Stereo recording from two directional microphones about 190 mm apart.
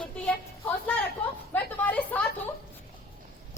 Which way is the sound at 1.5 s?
10° left (ahead or behind).